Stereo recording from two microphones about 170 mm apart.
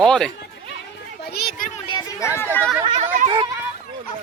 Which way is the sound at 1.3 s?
65° left (ahead or behind).